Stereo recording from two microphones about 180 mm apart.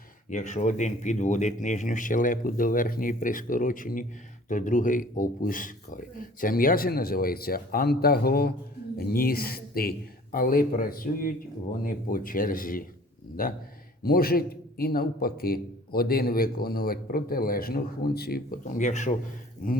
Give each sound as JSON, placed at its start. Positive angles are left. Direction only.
{"t": 0.3, "sound": "a man's voice", "side_deg": 40}